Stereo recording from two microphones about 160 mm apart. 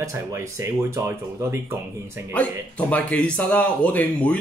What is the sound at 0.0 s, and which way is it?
Speech, 20° right (ahead or behind).